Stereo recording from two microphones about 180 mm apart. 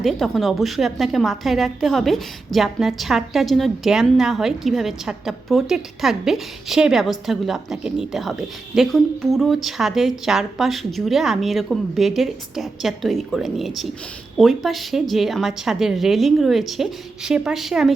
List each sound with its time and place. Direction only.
0.0 s a woman's voice: centre (ahead or behind)